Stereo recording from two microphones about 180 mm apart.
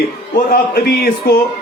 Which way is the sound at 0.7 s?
60° left (ahead or behind).